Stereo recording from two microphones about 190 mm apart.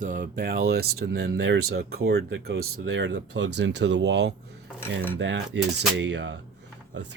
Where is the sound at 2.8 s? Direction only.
70° right (ahead or behind).